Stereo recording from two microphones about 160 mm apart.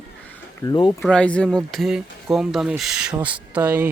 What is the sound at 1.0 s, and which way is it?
Speech, 5° left (ahead or behind).